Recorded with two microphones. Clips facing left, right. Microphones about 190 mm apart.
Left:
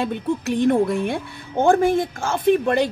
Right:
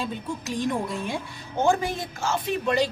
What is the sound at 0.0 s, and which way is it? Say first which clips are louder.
A woman's voice: left 8 dB; 60° left (ahead or behind).